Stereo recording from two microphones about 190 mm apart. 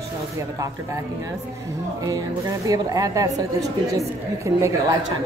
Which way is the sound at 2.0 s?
20° right (ahead or behind).